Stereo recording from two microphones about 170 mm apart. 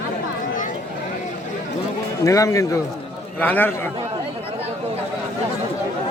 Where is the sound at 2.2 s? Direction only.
20° left (ahead or behind).